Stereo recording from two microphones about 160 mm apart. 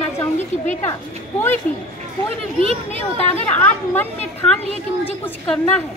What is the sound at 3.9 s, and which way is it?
A woman's voice, 10° left (ahead or behind).